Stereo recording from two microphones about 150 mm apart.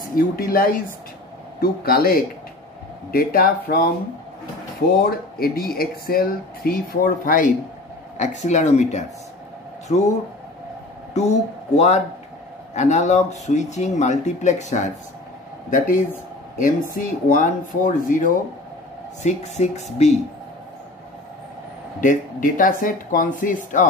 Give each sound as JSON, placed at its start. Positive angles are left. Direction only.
{"t": 0.1, "sound": "speech", "side_deg": 75}
{"t": 4.8, "sound": "speech", "side_deg": 85}
{"t": 8.2, "sound": "speech", "side_deg": 50}
{"t": 11.1, "sound": "speech", "side_deg": 50}
{"t": 16.5, "sound": "speech", "side_deg": 65}
{"t": 19.2, "sound": "speech", "side_deg": 50}
{"t": 22.0, "sound": "speech", "side_deg": 60}